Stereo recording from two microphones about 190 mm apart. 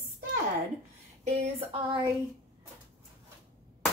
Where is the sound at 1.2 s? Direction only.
35° right (ahead or behind).